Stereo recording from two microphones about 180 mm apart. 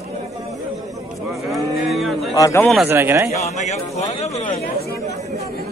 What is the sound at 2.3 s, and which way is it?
Speech, 15° left (ahead or behind).